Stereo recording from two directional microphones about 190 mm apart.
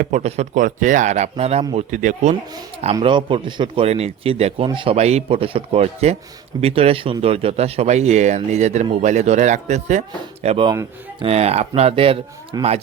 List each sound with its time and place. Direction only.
0.0 s speech: 40° right (ahead or behind)
2.9 s speech: 25° right (ahead or behind)